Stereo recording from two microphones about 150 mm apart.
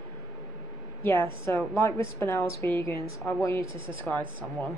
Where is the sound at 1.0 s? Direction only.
15° left (ahead or behind).